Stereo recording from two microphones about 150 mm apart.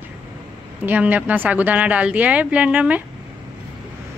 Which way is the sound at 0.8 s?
10° right (ahead or behind).